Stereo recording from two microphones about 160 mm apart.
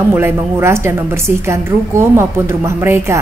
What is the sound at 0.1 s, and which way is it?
A woman's voice, 15° right (ahead or behind).